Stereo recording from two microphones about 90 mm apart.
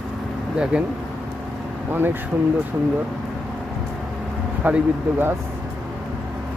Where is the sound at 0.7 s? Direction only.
15° right (ahead or behind).